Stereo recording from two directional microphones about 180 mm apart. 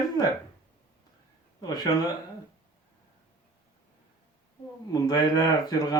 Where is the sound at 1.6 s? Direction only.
20° left (ahead or behind).